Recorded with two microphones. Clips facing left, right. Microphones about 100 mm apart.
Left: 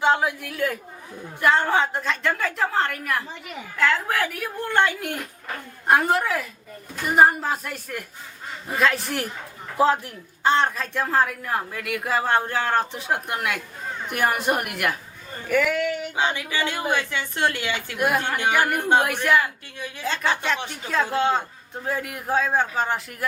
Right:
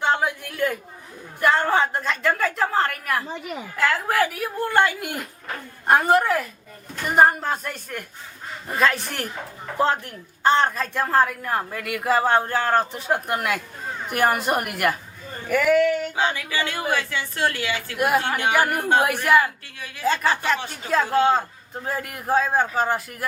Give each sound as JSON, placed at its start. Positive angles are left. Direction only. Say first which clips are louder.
{"t": 0.0, "sound": "a sound", "louder": "left 1 dB", "side_deg": 0}
{"t": 1.4, "sound": "a woman's voice", "louder": "even", "side_deg": 0}
{"t": 16.1, "sound": "a woman's voice", "louder": "right 1 dB", "side_deg": 20}
{"t": 17.9, "sound": "a woman's voice", "louder": "right 2 dB", "side_deg": -5}